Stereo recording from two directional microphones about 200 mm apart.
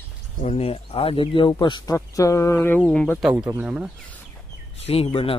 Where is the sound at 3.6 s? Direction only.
5° right (ahead or behind).